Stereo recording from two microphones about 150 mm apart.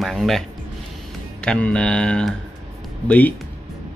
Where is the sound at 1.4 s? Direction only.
5° left (ahead or behind).